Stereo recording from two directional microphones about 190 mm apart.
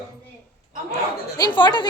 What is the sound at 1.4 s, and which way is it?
Speech, 25° left (ahead or behind).